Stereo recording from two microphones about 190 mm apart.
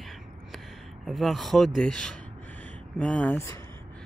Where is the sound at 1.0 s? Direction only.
Centre (ahead or behind).